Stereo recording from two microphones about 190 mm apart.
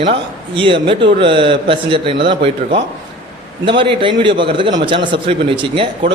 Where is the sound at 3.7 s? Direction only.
25° right (ahead or behind).